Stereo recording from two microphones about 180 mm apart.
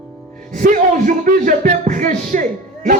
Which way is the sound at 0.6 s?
50° right (ahead or behind).